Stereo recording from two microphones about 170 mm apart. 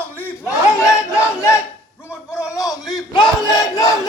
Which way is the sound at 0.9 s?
15° left (ahead or behind).